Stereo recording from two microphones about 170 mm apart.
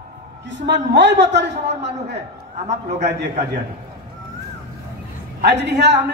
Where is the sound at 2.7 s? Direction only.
40° right (ahead or behind).